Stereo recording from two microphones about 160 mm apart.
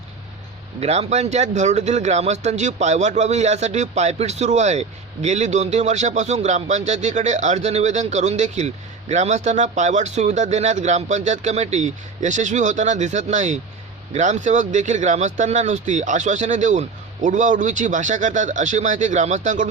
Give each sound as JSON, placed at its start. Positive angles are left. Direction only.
{"t": 0.8, "sound": "speech", "side_deg": -40}